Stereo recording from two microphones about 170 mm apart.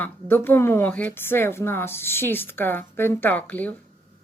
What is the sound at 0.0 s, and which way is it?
Speech, 10° left (ahead or behind).